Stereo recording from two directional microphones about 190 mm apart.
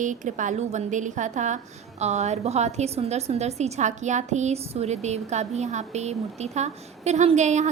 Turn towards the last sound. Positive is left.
turn(degrees=-40)  # may be behind; listen again after turning